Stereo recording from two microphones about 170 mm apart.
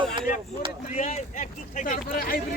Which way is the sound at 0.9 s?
40° left (ahead or behind).